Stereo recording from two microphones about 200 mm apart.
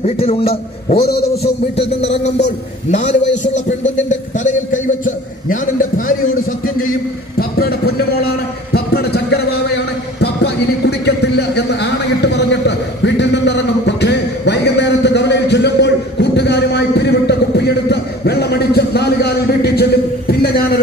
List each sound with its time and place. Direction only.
0.0 s a man's voice: 30° left (ahead or behind)
2.9 s a man's voice: 35° left (ahead or behind)
5.0 s a man's voice: 40° left (ahead or behind)
7.3 s a sound: 50° left (ahead or behind)
10.2 s music: 55° left (ahead or behind)